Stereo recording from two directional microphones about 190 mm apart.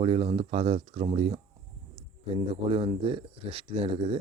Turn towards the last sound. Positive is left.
turn(degrees=-30)  # may be behind; listen again after turning